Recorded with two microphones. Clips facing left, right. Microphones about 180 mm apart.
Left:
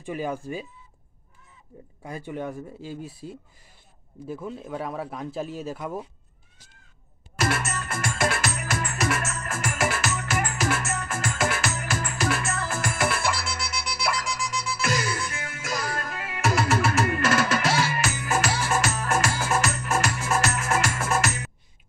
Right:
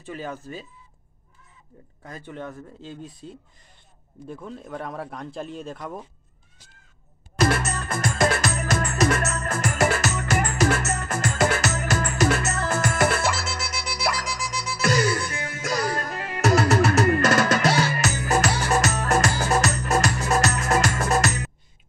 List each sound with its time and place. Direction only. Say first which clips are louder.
0.0 s speech: left 4 dB; 10° left (ahead or behind)
2.0 s speech: left 4 dB; 10° left (ahead or behind)
7.3 s music: right 4 dB; 40° right (ahead or behind)